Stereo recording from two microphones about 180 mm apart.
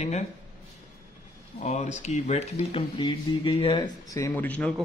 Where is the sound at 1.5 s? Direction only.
40° left (ahead or behind).